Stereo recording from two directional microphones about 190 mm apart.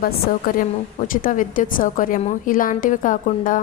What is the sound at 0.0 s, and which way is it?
A woman's voice, 45° left (ahead or behind).